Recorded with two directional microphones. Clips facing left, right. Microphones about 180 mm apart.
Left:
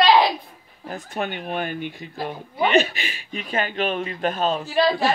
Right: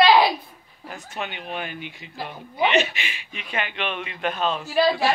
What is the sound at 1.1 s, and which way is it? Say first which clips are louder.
Speech: left 4 dB; 50° left (ahead or behind).